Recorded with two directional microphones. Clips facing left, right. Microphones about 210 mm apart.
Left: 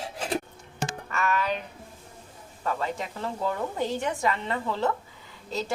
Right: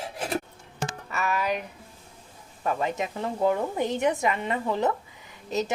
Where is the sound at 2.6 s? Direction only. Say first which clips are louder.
Right 3 dB; 15° right (ahead or behind).